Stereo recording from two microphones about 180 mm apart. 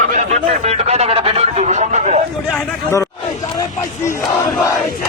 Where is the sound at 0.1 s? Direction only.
40° right (ahead or behind).